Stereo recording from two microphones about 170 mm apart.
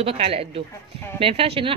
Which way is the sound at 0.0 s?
35° right (ahead or behind).